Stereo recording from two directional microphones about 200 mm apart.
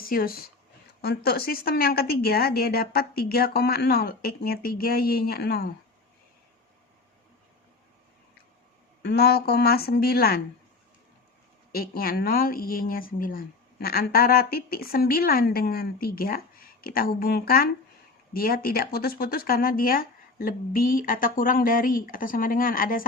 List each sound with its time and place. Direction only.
0.0 s speech: 45° left (ahead or behind)
9.0 s speech: 55° left (ahead or behind)
11.7 s speech: 50° left (ahead or behind)